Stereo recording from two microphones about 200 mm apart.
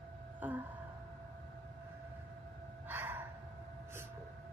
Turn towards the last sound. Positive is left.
turn(degrees=-10)  # may be behind; listen again after turning